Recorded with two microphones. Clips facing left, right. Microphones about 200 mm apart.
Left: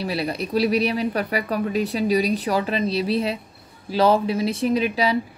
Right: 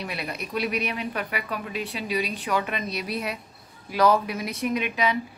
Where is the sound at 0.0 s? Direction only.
30° left (ahead or behind).